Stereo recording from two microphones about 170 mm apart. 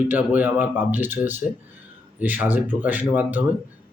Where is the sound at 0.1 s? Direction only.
10° right (ahead or behind).